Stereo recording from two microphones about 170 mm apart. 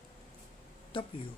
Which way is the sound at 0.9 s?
30° left (ahead or behind).